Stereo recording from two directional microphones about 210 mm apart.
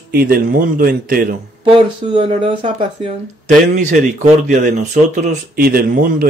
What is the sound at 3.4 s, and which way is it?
Speech, 40° right (ahead or behind).